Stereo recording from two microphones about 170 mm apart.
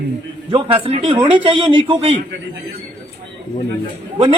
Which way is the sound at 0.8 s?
30° right (ahead or behind).